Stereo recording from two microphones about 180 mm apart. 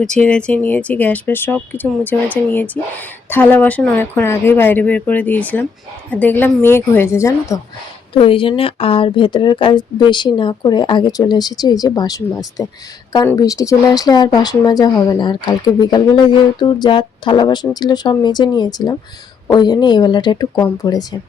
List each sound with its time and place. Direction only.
0.0 s speech: 5° left (ahead or behind)
8.1 s speech: 30° left (ahead or behind)